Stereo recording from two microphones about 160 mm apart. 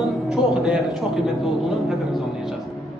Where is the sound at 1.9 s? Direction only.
Centre (ahead or behind).